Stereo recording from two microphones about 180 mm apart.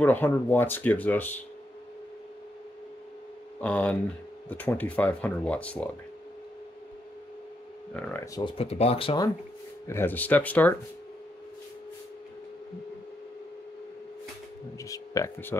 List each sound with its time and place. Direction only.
0.0 s speech: 10° left (ahead or behind)
3.6 s speech: 5° left (ahead or behind)
7.9 s speech: 10° left (ahead or behind)
8.4 s speech: 30° left (ahead or behind)
9.8 s speech: 10° left (ahead or behind)
14.8 s speech: 15° left (ahead or behind)